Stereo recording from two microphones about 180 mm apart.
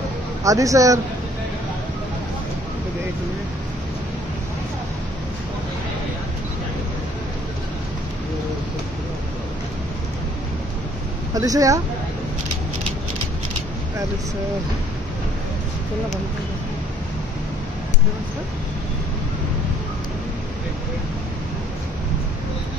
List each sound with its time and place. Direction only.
0.4 s speech: 20° right (ahead or behind)
11.3 s speech: 20° right (ahead or behind)